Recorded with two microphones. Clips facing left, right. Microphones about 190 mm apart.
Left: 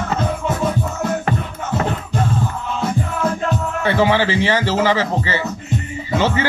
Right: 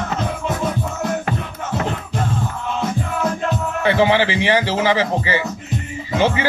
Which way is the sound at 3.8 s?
15° right (ahead or behind).